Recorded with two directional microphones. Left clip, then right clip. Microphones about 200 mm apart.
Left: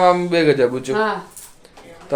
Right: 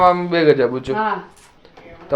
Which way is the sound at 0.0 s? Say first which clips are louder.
Right 1 dB; 15° left (ahead or behind).